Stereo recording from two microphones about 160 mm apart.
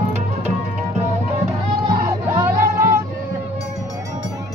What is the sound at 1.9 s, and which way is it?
Music, 20° right (ahead or behind).